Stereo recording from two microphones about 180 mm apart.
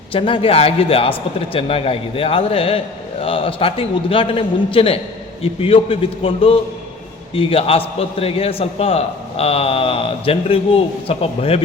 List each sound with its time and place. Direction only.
0.1 s a man's voice: 30° left (ahead or behind)